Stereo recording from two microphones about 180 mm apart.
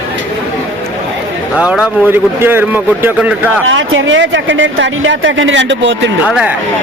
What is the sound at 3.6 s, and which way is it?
Speech, 90° right.